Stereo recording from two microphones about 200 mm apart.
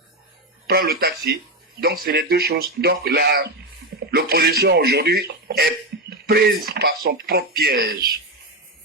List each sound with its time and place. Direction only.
0.7 s speech: 50° right (ahead or behind)